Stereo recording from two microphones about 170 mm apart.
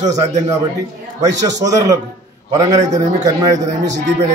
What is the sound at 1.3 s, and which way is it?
A man's voice, 20° right (ahead or behind).